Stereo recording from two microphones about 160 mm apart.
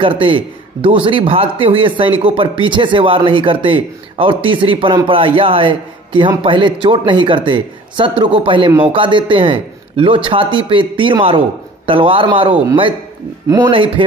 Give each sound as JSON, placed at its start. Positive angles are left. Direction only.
{"t": 0.0, "sound": "speech", "side_deg": -35}